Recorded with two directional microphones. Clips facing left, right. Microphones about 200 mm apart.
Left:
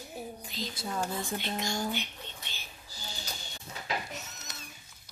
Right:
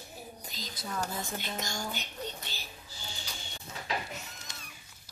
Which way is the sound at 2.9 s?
40° left (ahead or behind).